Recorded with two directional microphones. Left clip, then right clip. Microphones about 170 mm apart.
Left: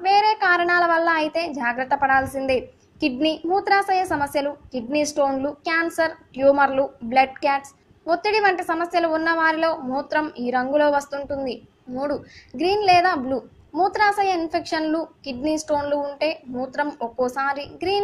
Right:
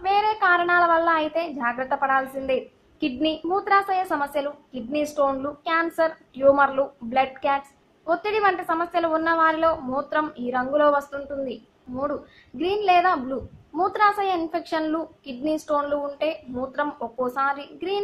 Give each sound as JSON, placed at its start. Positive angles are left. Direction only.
{"t": 0.0, "sound": "a child's voice", "side_deg": 10}